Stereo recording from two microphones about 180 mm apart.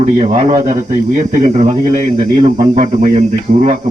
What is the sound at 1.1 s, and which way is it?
Speech, 45° right (ahead or behind).